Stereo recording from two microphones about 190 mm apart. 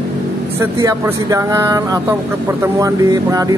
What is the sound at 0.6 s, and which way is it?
Speech, 15° right (ahead or behind).